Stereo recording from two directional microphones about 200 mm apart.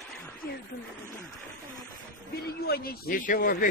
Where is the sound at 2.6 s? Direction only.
50° left (ahead or behind).